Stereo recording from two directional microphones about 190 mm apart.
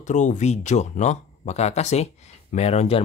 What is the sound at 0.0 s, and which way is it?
Speech, 40° left (ahead or behind).